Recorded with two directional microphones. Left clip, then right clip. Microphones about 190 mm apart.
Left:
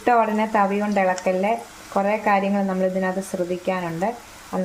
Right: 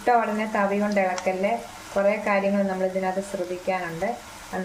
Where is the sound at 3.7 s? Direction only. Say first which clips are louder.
Even; 45° left (ahead or behind).